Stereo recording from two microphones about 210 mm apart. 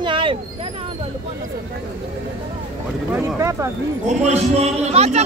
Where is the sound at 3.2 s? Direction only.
15° right (ahead or behind).